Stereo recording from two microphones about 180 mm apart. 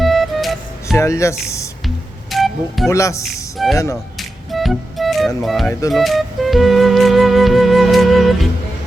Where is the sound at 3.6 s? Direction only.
Centre (ahead or behind).